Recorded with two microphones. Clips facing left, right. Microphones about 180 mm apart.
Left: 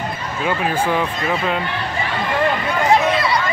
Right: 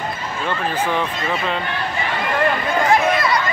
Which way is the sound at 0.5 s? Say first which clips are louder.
Left 3 dB; 10° left (ahead or behind).